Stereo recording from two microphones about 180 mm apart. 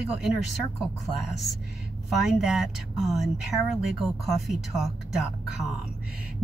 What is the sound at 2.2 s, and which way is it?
Speech, centre (ahead or behind).